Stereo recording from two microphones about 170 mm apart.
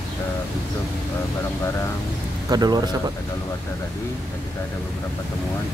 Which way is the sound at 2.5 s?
25° right (ahead or behind).